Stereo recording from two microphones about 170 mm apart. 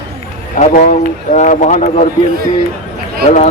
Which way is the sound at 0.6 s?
45° left (ahead or behind).